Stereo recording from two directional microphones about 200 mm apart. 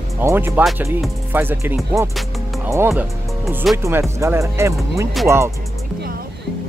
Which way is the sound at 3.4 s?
Centre (ahead or behind).